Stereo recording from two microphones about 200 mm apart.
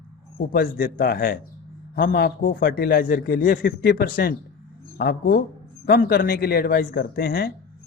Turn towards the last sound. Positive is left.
turn(degrees=50)  # may be behind; listen again after turning